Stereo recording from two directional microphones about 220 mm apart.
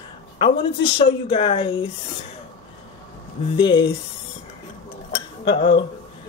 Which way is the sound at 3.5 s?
20° left (ahead or behind).